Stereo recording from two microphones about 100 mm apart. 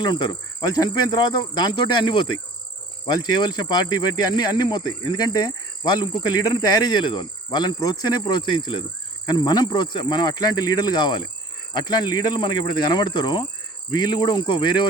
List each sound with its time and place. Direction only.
0.0 s speech: 50° left (ahead or behind)
8.3 s speech: 55° left (ahead or behind)